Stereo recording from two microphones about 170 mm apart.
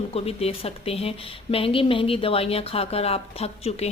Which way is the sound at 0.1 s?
35° left (ahead or behind).